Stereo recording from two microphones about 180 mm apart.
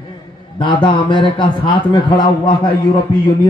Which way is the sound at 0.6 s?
25° left (ahead or behind).